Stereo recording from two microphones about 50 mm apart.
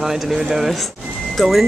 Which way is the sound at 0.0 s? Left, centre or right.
Centre.